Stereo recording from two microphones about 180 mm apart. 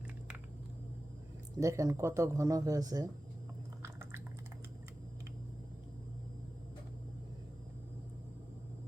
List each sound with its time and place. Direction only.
1.5 s speech: 15° right (ahead or behind)